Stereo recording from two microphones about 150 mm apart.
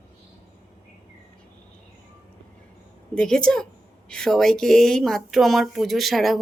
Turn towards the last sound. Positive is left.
turn(degrees=0)  # may be behind; listen again after turning